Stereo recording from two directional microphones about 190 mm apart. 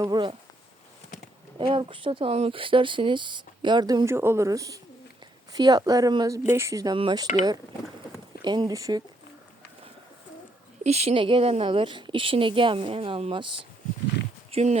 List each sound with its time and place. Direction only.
0.0 s speech: 25° right (ahead or behind)
1.5 s speech: 25° right (ahead or behind)
8.4 s speech: 25° right (ahead or behind)
10.8 s speech: 35° right (ahead or behind)